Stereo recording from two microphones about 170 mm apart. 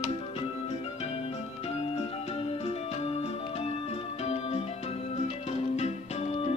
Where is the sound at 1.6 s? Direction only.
35° left (ahead or behind).